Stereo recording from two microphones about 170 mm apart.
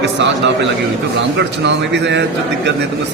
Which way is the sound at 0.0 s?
90° right.